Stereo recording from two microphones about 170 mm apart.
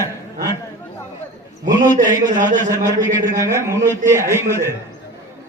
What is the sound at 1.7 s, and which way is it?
A man's voice, 50° right (ahead or behind).